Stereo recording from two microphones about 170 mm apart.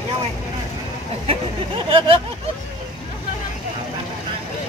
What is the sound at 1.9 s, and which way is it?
Speech, 30° right (ahead or behind).